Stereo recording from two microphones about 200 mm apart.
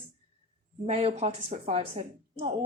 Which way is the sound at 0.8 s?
35° right (ahead or behind).